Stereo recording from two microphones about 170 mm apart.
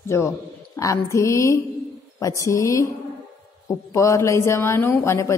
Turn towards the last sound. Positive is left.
turn(degrees=15)  # may be behind; listen again after turning